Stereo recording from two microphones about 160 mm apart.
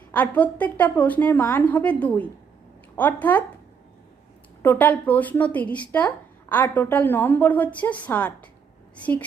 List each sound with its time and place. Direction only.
0.1 s speech: 10° left (ahead or behind)
4.6 s speech: 10° left (ahead or behind)